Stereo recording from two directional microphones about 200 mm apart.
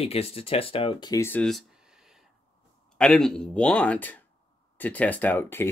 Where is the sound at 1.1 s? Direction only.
10° left (ahead or behind).